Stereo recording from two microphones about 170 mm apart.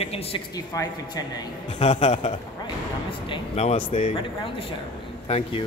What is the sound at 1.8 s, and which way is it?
Speech, 40° left (ahead or behind).